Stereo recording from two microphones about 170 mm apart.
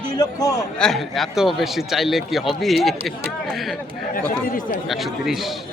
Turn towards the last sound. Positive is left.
turn(degrees=0)  # may be behind; listen again after turning